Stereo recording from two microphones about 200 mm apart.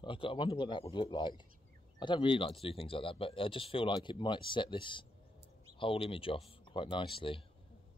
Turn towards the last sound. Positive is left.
turn(degrees=25)  # may be behind; listen again after turning